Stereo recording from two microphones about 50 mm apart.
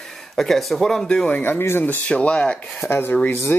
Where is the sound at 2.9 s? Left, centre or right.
Left.